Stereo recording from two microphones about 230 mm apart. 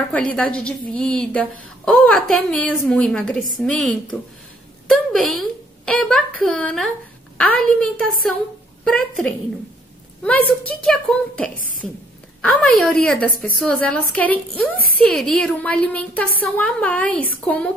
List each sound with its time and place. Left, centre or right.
0.1 s a woman's voice: centre